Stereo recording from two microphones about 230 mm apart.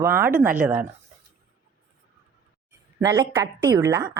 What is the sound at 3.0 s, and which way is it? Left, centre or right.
Speech, centre.